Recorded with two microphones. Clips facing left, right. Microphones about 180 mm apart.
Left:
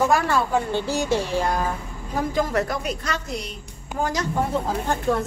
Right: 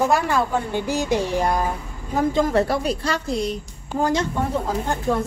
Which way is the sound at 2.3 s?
30° right (ahead or behind).